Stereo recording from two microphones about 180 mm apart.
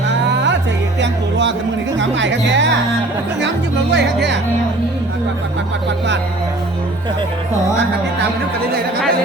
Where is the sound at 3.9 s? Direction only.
75° right (ahead or behind).